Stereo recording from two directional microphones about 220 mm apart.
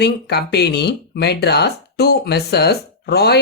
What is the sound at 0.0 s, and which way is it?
Speech, 50° left (ahead or behind).